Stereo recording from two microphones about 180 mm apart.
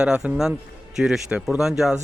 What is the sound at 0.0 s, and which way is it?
Speech, 5° right (ahead or behind).